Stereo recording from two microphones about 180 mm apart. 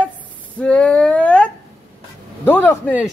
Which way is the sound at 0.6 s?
5° left (ahead or behind).